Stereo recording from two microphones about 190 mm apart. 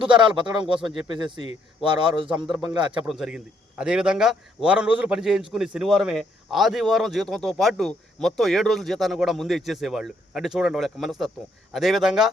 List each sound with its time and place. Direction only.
0.0 s speech: 25° right (ahead or behind)
1.8 s speech: 25° right (ahead or behind)
2.7 s a man's voice: 5° right (ahead or behind)